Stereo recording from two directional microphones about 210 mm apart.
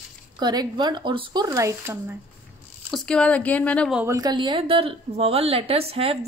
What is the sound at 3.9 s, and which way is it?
A woman's voice, 10° right (ahead or behind).